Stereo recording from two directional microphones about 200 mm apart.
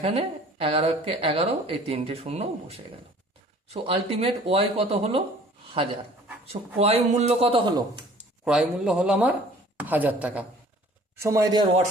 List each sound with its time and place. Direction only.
0.0 s a man's voice: 30° right (ahead or behind)
8.4 s a woman's voice: 5° right (ahead or behind)